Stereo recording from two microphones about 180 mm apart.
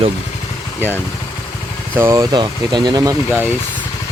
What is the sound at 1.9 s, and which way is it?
Speech, 15° right (ahead or behind).